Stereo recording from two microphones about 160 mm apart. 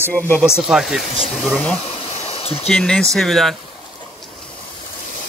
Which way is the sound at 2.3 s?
35° left (ahead or behind).